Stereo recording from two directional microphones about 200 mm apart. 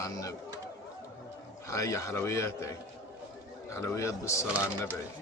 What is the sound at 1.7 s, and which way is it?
Speech, 15° left (ahead or behind).